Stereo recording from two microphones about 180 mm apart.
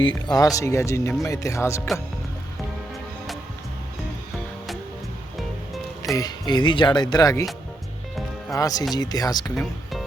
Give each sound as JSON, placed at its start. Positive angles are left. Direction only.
{"t": 0.3, "sound": "speech", "side_deg": 20}
{"t": 6.1, "sound": "speech", "side_deg": 20}
{"t": 8.5, "sound": "speech", "side_deg": 20}
{"t": 9.6, "sound": "music", "side_deg": 0}